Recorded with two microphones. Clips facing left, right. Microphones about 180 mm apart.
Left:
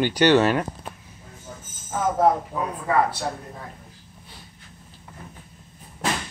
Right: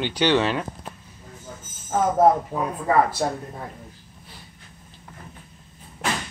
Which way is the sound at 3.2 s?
45° right (ahead or behind).